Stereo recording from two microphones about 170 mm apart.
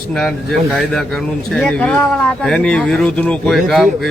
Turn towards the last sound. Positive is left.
turn(degrees=0)  # may be behind; listen again after turning